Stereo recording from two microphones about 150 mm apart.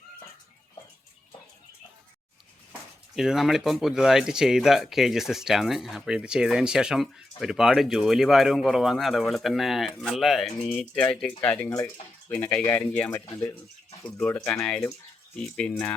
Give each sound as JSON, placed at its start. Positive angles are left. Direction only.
{"t": 3.2, "sound": "speech", "side_deg": 0}